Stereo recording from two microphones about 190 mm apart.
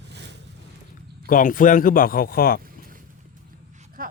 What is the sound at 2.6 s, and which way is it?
Boat, 50° right (ahead or behind).